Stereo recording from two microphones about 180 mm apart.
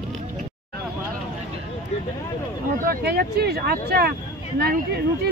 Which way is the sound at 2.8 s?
60° right (ahead or behind).